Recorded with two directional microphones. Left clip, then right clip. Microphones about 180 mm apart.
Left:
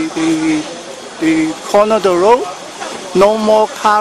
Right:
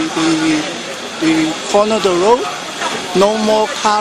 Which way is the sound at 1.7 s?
25° left (ahead or behind).